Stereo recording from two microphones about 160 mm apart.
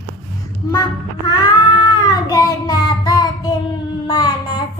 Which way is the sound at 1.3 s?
30° left (ahead or behind).